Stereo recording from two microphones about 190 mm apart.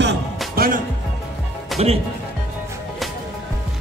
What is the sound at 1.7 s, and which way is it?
Speech, 30° right (ahead or behind).